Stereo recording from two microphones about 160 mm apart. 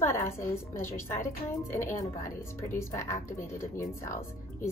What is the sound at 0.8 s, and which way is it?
Speech, 15° left (ahead or behind).